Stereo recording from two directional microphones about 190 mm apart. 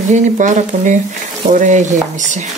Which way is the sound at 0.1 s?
40° right (ahead or behind).